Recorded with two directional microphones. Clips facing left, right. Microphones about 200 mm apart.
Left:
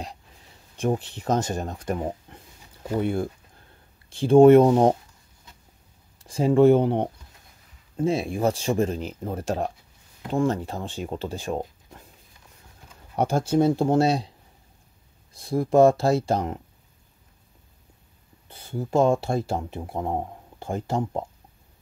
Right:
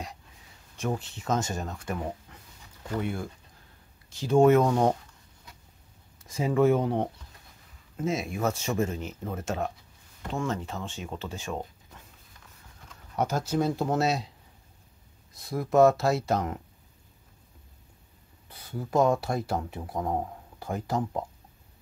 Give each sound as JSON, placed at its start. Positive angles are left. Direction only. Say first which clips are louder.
{"t": 0.7, "sound": "speech", "louder": "left 6 dB", "side_deg": 30}
{"t": 6.1, "sound": "speech", "louder": "left 6 dB", "side_deg": 30}
{"t": 13.1, "sound": "speech", "louder": "left 5 dB", "side_deg": 30}
{"t": 15.3, "sound": "speech", "louder": "left 4 dB", "side_deg": 30}
{"t": 18.5, "sound": "speech", "louder": "left 4 dB", "side_deg": 25}